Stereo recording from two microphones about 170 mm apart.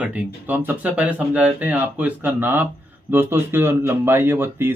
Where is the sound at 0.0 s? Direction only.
10° right (ahead or behind).